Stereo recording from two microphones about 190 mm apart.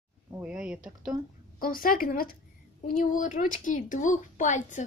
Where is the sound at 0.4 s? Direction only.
5° right (ahead or behind).